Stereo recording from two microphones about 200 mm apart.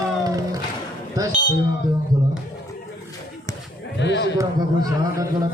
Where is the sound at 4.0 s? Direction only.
60° left (ahead or behind).